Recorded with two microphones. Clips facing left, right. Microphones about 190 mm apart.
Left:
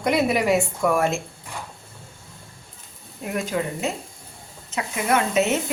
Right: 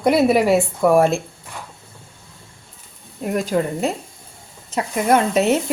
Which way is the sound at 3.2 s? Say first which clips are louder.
Right 5 dB; 40° right (ahead or behind).